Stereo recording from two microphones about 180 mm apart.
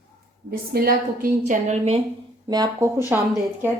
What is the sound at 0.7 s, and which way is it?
A woman's voice, 55° right (ahead or behind).